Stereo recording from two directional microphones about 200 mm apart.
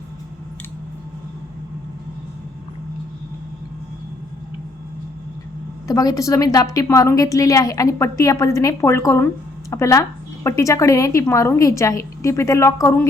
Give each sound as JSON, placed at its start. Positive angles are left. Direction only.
{"t": 5.9, "sound": "a woman's voice", "side_deg": 15}